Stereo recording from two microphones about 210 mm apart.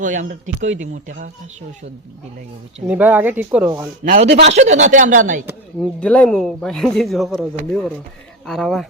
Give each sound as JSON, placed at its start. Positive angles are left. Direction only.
{"t": 0.0, "sound": "speech", "side_deg": -35}
{"t": 2.8, "sound": "speech", "side_deg": -5}
{"t": 4.0, "sound": "a man's voice", "side_deg": -40}
{"t": 4.5, "sound": "speech", "side_deg": -35}
{"t": 5.8, "sound": "speech", "side_deg": 5}
{"t": 8.4, "sound": "speech", "side_deg": 0}